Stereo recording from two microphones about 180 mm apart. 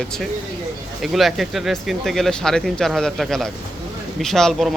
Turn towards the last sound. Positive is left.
turn(degrees=0)  # may be behind; listen again after turning